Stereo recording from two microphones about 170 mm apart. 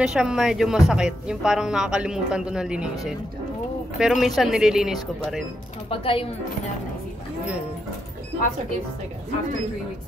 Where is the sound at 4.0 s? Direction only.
Centre (ahead or behind).